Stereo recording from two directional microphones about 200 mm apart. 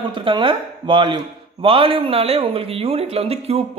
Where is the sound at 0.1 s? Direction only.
25° right (ahead or behind).